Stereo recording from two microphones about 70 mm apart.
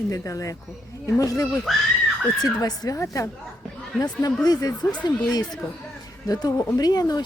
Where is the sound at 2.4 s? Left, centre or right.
Left.